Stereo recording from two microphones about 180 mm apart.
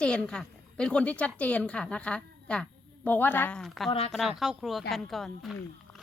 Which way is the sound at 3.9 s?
35° left (ahead or behind).